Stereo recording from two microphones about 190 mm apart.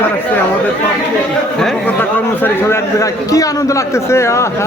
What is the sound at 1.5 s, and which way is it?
A man's voice, 5° left (ahead or behind).